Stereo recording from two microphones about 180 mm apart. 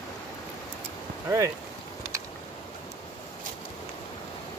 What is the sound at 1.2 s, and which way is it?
Speech, 15° right (ahead or behind).